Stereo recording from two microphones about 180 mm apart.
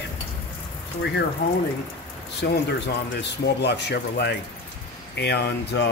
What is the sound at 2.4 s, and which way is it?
Speech, 70° left (ahead or behind).